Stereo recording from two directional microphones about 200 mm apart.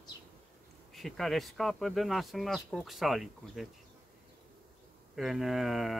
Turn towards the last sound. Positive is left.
turn(degrees=0)  # may be behind; listen again after turning